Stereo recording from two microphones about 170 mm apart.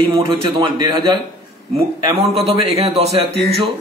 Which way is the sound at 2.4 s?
35° right (ahead or behind).